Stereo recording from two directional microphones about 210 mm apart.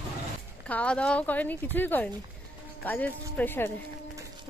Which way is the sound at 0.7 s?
5° left (ahead or behind).